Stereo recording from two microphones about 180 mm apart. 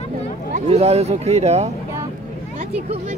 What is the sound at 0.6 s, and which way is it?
Speech, 35° right (ahead or behind).